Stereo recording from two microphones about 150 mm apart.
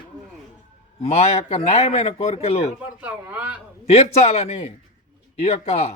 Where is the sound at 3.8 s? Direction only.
45° left (ahead or behind).